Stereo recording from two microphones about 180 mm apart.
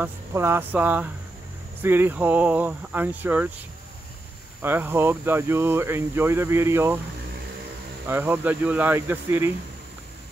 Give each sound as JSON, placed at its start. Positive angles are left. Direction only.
{"t": 0.0, "sound": "speech", "side_deg": -15}
{"t": 4.6, "sound": "speech", "side_deg": -10}
{"t": 8.1, "sound": "speech", "side_deg": -10}